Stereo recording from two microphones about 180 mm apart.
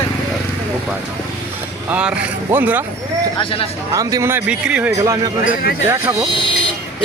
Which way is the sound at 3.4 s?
30° left (ahead or behind).